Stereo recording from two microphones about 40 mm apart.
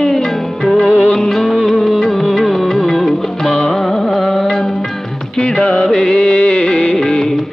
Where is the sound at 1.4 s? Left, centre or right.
Centre.